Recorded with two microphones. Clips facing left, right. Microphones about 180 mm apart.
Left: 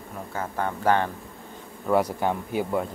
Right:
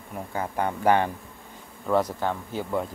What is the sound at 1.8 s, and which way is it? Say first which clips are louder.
Speech: left 1 dB; 10° left (ahead or behind).